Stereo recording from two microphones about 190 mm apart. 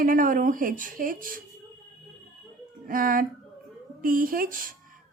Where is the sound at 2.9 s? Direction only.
45° right (ahead or behind).